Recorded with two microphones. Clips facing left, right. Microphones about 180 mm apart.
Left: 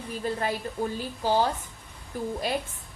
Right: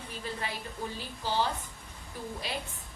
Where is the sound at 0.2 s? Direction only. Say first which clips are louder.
Left 9 dB; 45° left (ahead or behind).